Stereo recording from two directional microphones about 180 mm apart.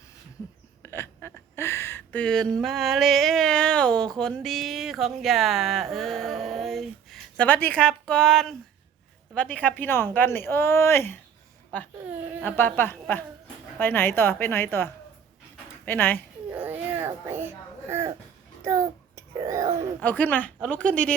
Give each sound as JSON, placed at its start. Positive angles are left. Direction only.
{"t": 0.8, "sound": "speech", "side_deg": 15}
{"t": 12.1, "sound": "a sound", "side_deg": -10}
{"t": 12.4, "sound": "speech", "side_deg": 10}
{"t": 15.9, "sound": "speech", "side_deg": 10}
{"t": 16.5, "sound": "baby cry", "side_deg": -10}
{"t": 18.6, "sound": "child singing", "side_deg": -15}
{"t": 20.0, "sound": "speech", "side_deg": 10}